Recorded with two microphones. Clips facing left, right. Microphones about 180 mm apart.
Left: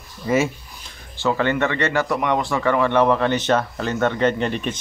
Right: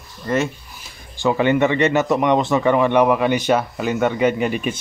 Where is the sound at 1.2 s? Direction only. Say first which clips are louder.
Right 4 dB; 15° right (ahead or behind).